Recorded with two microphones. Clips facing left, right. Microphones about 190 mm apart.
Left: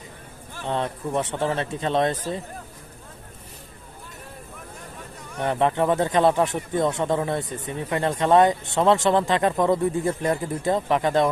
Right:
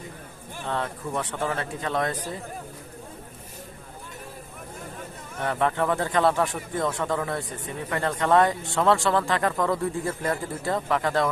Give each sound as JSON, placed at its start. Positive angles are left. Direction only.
{"t": 0.6, "sound": "speech", "side_deg": 20}
{"t": 5.4, "sound": "speech", "side_deg": 20}